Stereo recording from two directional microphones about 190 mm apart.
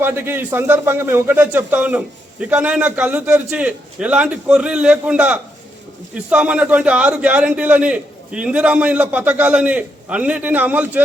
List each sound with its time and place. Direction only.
0.0 s a man's voice: 10° right (ahead or behind)